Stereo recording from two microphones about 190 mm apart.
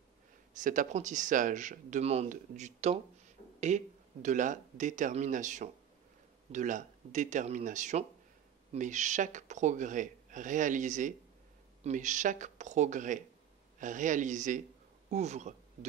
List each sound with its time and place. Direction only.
0.5 s speech: 45° right (ahead or behind)